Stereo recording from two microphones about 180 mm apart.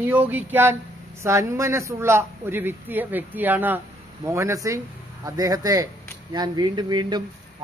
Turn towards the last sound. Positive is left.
turn(degrees=-25)  # may be behind; listen again after turning